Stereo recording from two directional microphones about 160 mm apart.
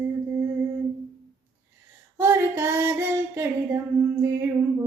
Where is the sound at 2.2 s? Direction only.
15° right (ahead or behind).